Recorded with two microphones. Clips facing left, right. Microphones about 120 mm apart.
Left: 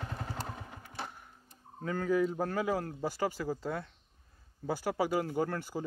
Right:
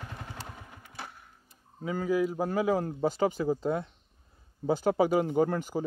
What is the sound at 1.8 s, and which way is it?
Speech, 10° right (ahead or behind).